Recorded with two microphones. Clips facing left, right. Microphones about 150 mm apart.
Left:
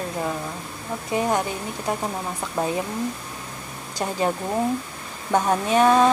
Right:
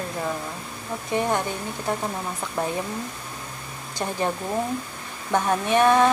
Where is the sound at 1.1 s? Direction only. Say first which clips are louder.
Left 1 dB; 15° left (ahead or behind).